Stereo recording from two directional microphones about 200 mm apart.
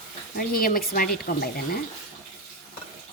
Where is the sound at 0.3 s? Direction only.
45° left (ahead or behind).